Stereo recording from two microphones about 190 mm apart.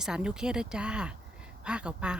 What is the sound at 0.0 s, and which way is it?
Speech, 5° right (ahead or behind).